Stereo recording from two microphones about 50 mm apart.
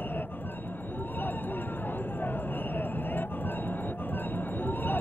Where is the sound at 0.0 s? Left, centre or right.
Left.